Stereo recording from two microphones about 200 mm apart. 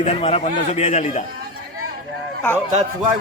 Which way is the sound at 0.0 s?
30° left (ahead or behind).